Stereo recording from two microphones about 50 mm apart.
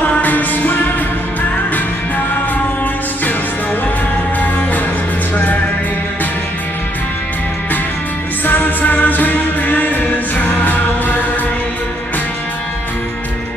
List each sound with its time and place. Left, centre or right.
0.0 s music: left
8.5 s music: left